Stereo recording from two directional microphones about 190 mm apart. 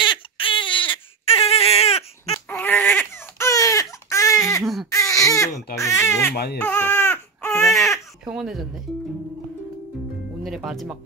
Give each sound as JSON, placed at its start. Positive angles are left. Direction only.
{"t": 0.0, "sound": "baby cry", "side_deg": 25}
{"t": 2.3, "sound": "baby cry", "side_deg": 10}
{"t": 6.3, "sound": "speech", "side_deg": 55}
{"t": 6.6, "sound": "baby cry", "side_deg": 10}
{"t": 7.6, "sound": "speech", "side_deg": 0}
{"t": 10.4, "sound": "speech", "side_deg": 0}